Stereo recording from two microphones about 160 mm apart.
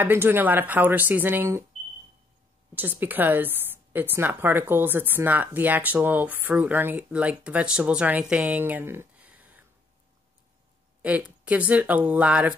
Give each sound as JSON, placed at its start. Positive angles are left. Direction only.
{"t": 0.0, "sound": "a woman's voice", "side_deg": -15}
{"t": 2.7, "sound": "a woman's voice", "side_deg": -10}
{"t": 11.0, "sound": "a woman's voice", "side_deg": -10}